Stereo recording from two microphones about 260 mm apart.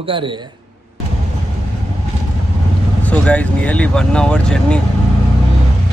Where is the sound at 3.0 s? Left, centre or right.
Centre.